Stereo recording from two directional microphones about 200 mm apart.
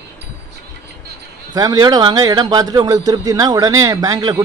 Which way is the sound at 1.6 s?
20° right (ahead or behind).